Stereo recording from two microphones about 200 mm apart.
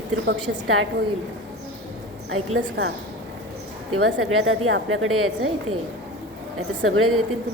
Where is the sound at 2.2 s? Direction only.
85° right.